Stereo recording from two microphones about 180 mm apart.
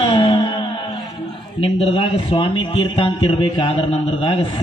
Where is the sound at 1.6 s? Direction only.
30° left (ahead or behind).